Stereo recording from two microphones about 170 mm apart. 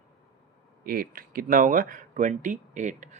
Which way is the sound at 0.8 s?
60° right (ahead or behind).